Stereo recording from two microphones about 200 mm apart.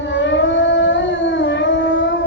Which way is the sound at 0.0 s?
65° left (ahead or behind).